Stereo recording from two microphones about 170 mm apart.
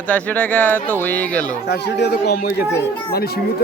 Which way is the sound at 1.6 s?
75° left (ahead or behind).